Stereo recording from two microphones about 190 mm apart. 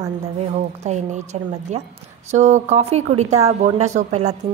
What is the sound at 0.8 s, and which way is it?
Speech, 40° right (ahead or behind).